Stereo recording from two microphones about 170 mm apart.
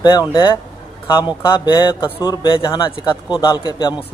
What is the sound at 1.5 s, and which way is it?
Speech, 25° left (ahead or behind).